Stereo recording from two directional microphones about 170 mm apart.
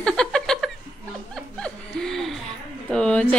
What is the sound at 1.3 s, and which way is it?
Snicker, 5° left (ahead or behind).